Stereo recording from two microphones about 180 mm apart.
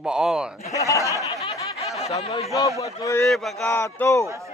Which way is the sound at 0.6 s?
15° left (ahead or behind).